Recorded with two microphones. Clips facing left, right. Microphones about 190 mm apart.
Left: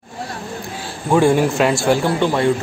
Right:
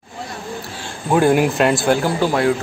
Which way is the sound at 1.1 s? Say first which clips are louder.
Even; centre (ahead or behind).